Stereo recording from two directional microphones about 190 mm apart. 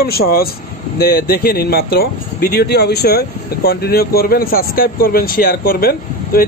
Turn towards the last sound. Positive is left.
turn(degrees=50)  # may be behind; listen again after turning